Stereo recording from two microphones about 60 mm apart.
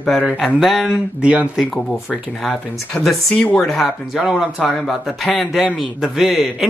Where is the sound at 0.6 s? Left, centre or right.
Centre.